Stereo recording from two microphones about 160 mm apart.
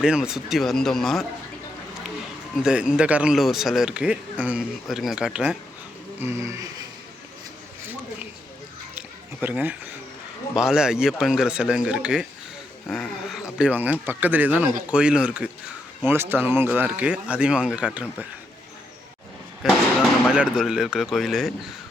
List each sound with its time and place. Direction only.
0.0 s speech: 5° right (ahead or behind)
2.6 s speech: 5° right (ahead or behind)
9.0 s a sound: 10° right (ahead or behind)
10.5 s speech: 5° right (ahead or behind)
19.6 s speech: 5° right (ahead or behind)